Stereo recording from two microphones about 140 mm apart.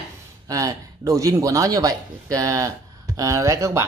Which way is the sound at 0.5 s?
25° right (ahead or behind).